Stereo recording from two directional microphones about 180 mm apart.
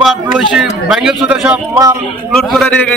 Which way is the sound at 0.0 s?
5° right (ahead or behind).